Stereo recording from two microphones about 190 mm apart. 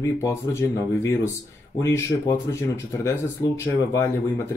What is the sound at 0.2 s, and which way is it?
Speech, 15° left (ahead or behind).